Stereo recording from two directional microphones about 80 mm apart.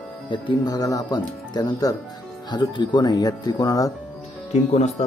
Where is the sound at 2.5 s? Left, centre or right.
Left.